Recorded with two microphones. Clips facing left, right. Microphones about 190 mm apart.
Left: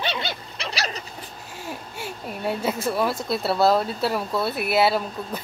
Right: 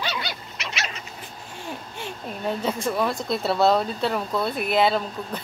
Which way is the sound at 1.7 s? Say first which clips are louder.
Even; 5° left (ahead or behind).